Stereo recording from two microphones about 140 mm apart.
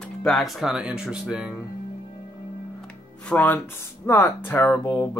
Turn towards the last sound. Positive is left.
turn(degrees=15)  # may be behind; listen again after turning